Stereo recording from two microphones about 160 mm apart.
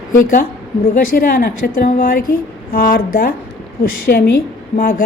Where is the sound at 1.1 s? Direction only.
65° left (ahead or behind).